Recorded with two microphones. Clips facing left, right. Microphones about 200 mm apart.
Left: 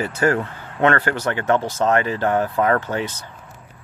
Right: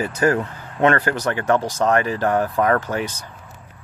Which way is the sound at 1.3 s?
20° left (ahead or behind).